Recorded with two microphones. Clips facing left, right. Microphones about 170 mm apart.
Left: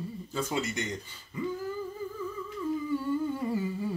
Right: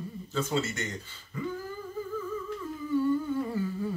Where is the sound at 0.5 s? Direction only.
15° left (ahead or behind).